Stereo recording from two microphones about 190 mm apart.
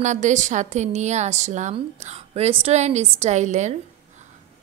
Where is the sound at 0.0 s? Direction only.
40° right (ahead or behind).